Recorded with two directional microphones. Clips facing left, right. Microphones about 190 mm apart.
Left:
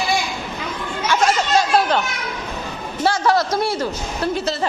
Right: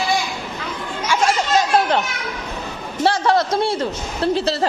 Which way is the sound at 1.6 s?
20° right (ahead or behind).